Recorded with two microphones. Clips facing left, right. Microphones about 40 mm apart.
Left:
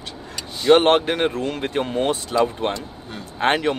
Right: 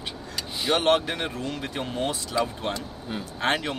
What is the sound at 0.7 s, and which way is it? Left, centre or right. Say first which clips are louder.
Speech: left 6 dB; left.